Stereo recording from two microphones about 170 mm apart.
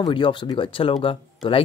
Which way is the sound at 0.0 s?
30° left (ahead or behind).